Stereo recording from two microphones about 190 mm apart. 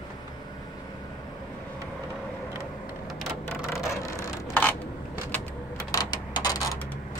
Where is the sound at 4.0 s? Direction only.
15° left (ahead or behind).